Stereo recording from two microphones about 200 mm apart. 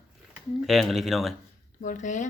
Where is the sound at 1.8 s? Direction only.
40° left (ahead or behind).